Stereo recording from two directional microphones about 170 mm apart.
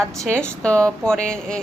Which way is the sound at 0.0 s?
5° left (ahead or behind).